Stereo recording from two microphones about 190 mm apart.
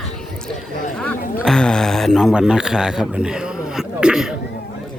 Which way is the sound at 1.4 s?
5° left (ahead or behind).